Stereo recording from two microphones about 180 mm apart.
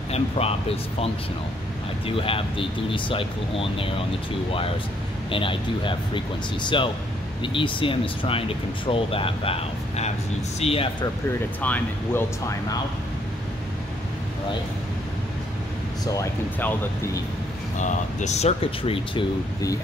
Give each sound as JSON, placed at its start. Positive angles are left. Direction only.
{"t": 0.1, "sound": "speech", "side_deg": 35}
{"t": 2.0, "sound": "speech", "side_deg": 30}
{"t": 5.3, "sound": "speech", "side_deg": 30}
{"t": 11.6, "sound": "speech", "side_deg": 10}
{"t": 16.1, "sound": "speech", "side_deg": 15}
{"t": 17.7, "sound": "speech", "side_deg": 40}